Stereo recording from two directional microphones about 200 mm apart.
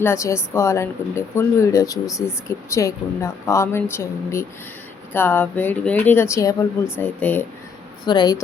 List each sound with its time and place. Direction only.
0.0 s speech: 15° left (ahead or behind)
8.0 s speech: 20° left (ahead or behind)